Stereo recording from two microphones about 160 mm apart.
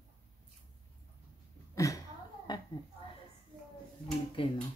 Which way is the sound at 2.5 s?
25° left (ahead or behind).